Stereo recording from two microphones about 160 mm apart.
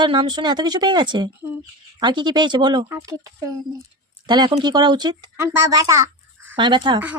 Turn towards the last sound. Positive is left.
turn(degrees=-30)  # may be behind; listen again after turning